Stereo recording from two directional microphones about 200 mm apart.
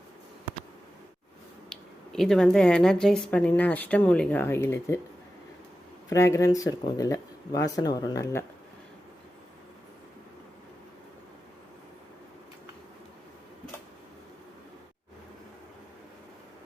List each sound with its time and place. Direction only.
1.7 s speech: centre (ahead or behind)
6.1 s speech: 15° left (ahead or behind)